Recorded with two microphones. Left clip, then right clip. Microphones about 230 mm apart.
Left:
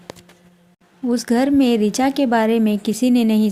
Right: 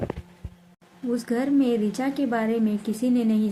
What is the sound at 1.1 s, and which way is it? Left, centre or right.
A woman's voice, left.